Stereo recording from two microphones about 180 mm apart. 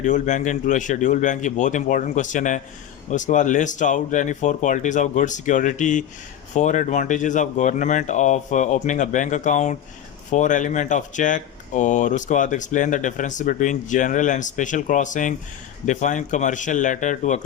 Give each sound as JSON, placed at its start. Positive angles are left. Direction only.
{"t": 0.0, "sound": "speech", "side_deg": 45}